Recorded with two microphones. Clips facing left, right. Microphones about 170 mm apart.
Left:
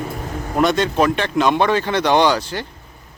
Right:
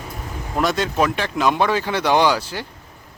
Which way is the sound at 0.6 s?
5° right (ahead or behind).